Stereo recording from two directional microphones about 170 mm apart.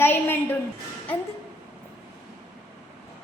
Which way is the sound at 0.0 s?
15° left (ahead or behind).